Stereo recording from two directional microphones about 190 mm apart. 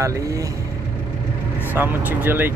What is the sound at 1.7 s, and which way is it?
Speech, 10° right (ahead or behind).